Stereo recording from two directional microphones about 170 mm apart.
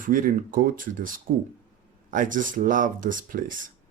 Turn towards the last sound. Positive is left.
turn(degrees=-55)  # may be behind; listen again after turning